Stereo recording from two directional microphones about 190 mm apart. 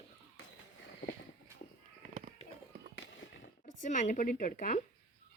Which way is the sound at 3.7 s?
40° left (ahead or behind).